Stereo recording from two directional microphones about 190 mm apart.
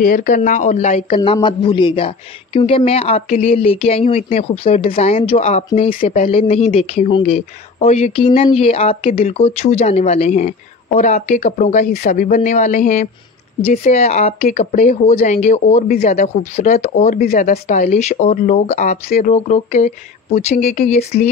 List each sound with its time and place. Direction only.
0.0 s speech: 45° left (ahead or behind)
1.1 s speech: 25° left (ahead or behind)